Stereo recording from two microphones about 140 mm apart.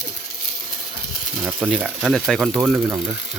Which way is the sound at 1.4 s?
5° right (ahead or behind).